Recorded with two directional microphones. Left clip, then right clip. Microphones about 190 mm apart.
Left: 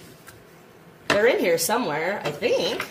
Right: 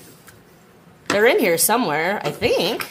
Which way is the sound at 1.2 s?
30° right (ahead or behind).